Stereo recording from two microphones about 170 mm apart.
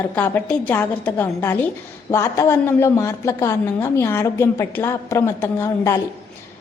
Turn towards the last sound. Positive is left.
turn(degrees=15)  # may be behind; listen again after turning